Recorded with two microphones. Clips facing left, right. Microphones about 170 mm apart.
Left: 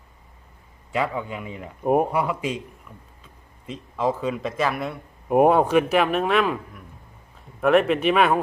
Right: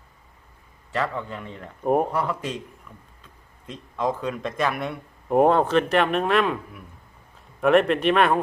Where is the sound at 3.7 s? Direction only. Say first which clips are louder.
Left 2 dB; 5° left (ahead or behind).